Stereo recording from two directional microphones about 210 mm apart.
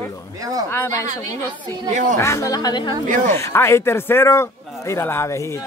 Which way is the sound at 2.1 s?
10° left (ahead or behind).